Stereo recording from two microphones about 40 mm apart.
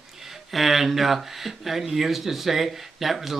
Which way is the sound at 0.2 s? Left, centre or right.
Centre.